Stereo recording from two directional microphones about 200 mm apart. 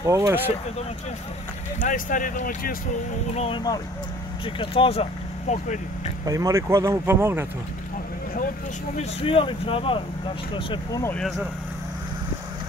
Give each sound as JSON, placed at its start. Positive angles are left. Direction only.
{"t": 0.0, "sound": "speech", "side_deg": -15}
{"t": 1.8, "sound": "speech", "side_deg": 40}
{"t": 3.3, "sound": "speech", "side_deg": 25}
{"t": 6.2, "sound": "speech", "side_deg": -15}
{"t": 8.9, "sound": "speech", "side_deg": 25}